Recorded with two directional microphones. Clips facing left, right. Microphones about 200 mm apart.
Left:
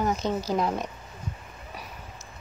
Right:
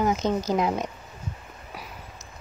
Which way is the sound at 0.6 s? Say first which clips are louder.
Right 2 dB; 20° right (ahead or behind).